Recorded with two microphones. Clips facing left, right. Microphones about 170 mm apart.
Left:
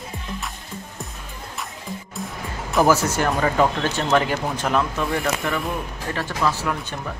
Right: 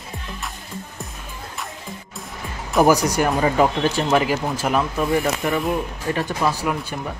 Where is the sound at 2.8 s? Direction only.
15° right (ahead or behind).